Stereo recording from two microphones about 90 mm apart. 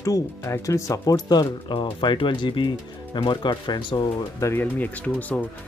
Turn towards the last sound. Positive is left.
turn(degrees=15)  # may be behind; listen again after turning